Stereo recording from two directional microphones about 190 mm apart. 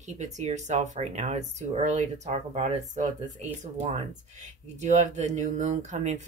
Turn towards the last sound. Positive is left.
turn(degrees=-40)  # may be behind; listen again after turning